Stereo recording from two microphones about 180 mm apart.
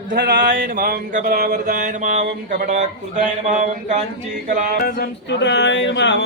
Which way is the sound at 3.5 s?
40° right (ahead or behind).